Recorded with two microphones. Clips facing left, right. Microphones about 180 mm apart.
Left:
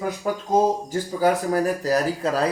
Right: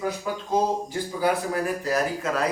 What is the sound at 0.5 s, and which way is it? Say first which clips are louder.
Speech: left 4 dB; 45° left (ahead or behind).